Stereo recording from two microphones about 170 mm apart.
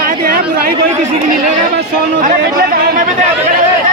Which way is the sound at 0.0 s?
60° right (ahead or behind).